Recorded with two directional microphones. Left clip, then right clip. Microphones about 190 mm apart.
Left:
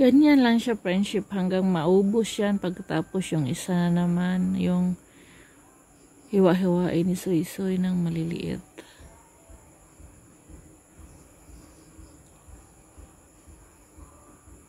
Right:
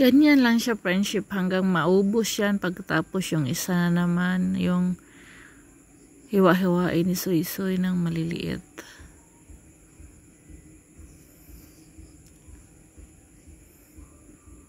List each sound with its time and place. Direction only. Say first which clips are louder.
0.0 s speech: even; centre (ahead or behind)